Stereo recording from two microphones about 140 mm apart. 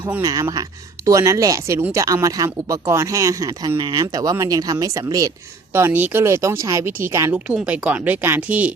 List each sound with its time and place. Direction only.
0.2 s speech: 25° right (ahead or behind)
5.7 s speech: 15° right (ahead or behind)